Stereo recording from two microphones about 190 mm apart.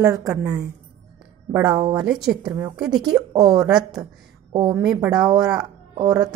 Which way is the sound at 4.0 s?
20° right (ahead or behind).